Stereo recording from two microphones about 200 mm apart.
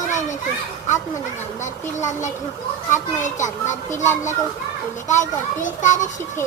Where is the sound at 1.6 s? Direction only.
35° left (ahead or behind).